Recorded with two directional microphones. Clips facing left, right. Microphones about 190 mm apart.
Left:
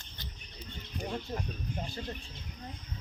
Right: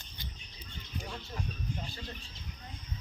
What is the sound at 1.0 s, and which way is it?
Music, 50° left (ahead or behind).